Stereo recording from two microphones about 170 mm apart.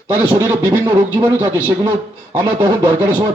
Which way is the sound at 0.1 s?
20° right (ahead or behind).